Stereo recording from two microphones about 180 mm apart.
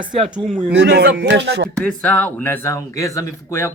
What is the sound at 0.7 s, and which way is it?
Speech, 70° right (ahead or behind).